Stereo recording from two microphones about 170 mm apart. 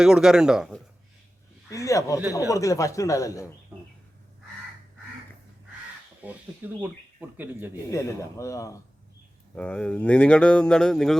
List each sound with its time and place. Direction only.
0.0 s speech: 5° right (ahead or behind)
1.7 s speech: 20° left (ahead or behind)
6.2 s speech: 10° right (ahead or behind)
7.9 s speech: 20° left (ahead or behind)
9.6 s speech: 5° left (ahead or behind)